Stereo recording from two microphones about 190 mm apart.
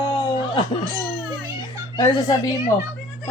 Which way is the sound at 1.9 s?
20° left (ahead or behind).